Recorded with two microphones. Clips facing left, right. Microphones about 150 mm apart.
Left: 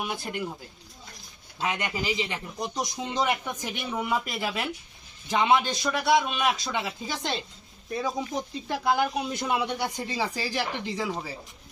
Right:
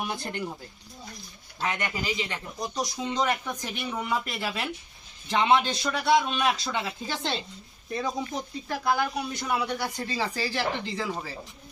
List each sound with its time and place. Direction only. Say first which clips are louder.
0.0 s a man's voice: even; 5° left (ahead or behind)
1.5 s a man's voice: left 1 dB; 15° left (ahead or behind)
7.9 s speech: left 1 dB; 5° left (ahead or behind)